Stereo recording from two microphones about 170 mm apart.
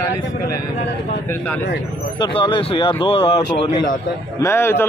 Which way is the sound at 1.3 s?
10° left (ahead or behind).